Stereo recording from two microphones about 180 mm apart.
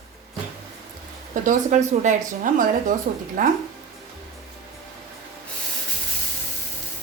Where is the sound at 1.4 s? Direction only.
40° right (ahead or behind).